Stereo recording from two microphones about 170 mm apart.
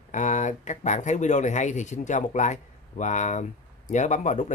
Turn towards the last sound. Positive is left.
turn(degrees=45)  # may be behind; listen again after turning